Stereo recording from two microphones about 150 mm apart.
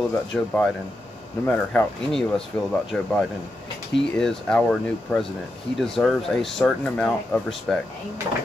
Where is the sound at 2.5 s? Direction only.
15° left (ahead or behind).